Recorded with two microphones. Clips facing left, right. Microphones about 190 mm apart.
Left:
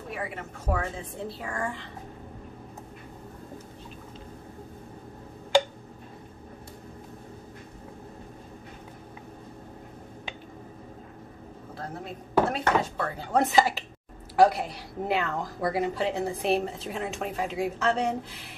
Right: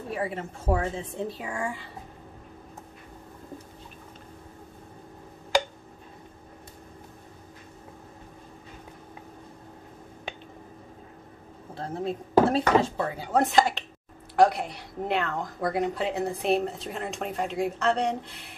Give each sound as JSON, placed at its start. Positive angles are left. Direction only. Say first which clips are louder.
{"t": 0.1, "sound": "a woman's voice", "louder": "right 5 dB", "side_deg": -30}
{"t": 11.7, "sound": "speech", "louder": "right 7 dB", "side_deg": -25}
{"t": 13.3, "sound": "a woman's voice", "louder": "even", "side_deg": 0}